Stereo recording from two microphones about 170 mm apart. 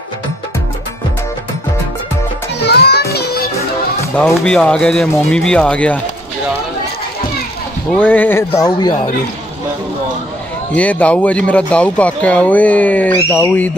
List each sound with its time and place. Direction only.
2.6 s music: 75° left (ahead or behind)
4.2 s speech: 5° left (ahead or behind)
7.9 s speech: 10° left (ahead or behind)
10.7 s speech: 10° left (ahead or behind)